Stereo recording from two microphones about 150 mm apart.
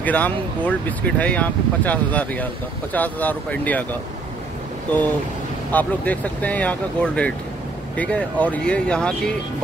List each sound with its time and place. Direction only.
0.0 s speech: 10° left (ahead or behind)
5.7 s speech: 10° left (ahead or behind)